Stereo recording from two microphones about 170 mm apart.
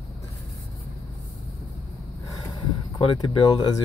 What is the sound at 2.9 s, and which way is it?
Speech, 30° left (ahead or behind).